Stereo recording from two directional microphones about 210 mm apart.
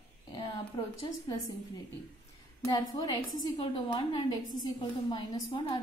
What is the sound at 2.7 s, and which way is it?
A woman's voice, 15° left (ahead or behind).